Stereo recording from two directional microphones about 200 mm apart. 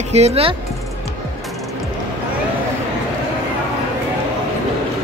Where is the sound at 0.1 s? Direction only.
30° right (ahead or behind).